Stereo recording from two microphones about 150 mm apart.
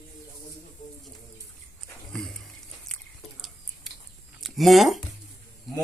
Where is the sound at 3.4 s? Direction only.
Centre (ahead or behind).